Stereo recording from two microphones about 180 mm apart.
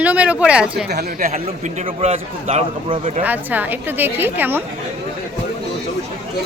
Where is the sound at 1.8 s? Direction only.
35° right (ahead or behind).